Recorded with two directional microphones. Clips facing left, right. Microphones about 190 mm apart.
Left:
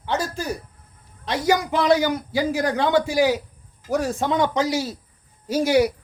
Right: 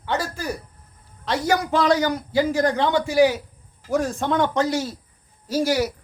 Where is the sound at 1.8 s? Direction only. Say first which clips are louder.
Left 1 dB; 10° left (ahead or behind).